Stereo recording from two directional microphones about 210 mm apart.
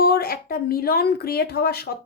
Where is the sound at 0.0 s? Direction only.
45° left (ahead or behind).